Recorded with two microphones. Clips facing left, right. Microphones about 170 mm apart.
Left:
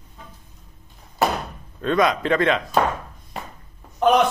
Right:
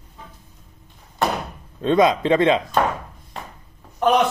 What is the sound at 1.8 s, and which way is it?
Speech, 25° right (ahead or behind).